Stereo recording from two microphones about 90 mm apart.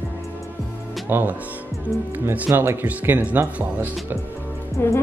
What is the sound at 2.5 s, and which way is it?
Speech, 20° right (ahead or behind).